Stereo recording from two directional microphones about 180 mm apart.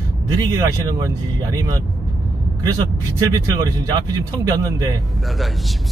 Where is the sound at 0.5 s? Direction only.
15° right (ahead or behind).